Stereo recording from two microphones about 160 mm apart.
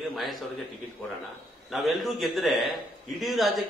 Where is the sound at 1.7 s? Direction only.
Centre (ahead or behind).